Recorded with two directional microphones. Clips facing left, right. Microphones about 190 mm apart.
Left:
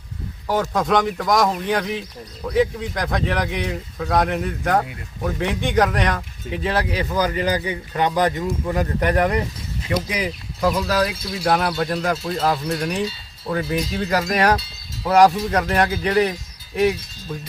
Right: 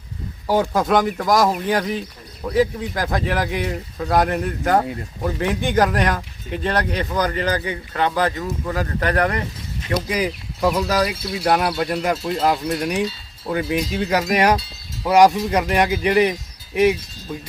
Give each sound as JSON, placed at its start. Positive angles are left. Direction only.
{"t": 0.4, "sound": "speech", "side_deg": -10}
{"t": 10.2, "sound": "speech", "side_deg": -5}